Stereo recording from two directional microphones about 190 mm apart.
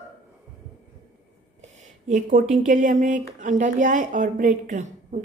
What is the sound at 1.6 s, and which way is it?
A woman's voice, 40° right (ahead or behind).